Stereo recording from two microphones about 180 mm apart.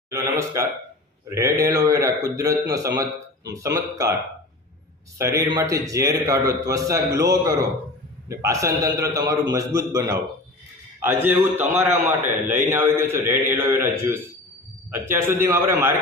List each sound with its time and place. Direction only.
0.1 s a man's voice: 15° right (ahead or behind)
5.1 s a man's voice: 15° right (ahead or behind)